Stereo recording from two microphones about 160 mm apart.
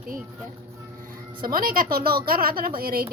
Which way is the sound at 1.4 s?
65° right (ahead or behind).